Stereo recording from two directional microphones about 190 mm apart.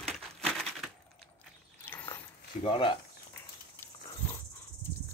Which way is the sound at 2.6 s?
25° left (ahead or behind).